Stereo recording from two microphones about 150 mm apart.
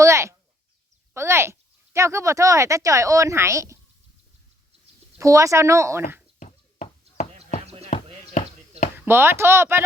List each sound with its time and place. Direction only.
0.0 s a sound: 20° right (ahead or behind)
5.1 s speech: 20° right (ahead or behind)
6.4 s knock: 50° left (ahead or behind)
9.0 s speech: 15° right (ahead or behind)